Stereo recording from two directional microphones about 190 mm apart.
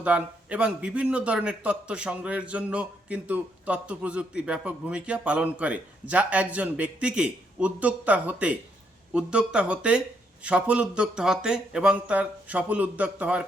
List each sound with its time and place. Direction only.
0.0 s a man's voice: 5° right (ahead or behind)